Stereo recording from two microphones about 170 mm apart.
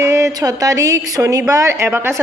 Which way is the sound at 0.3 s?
20° right (ahead or behind).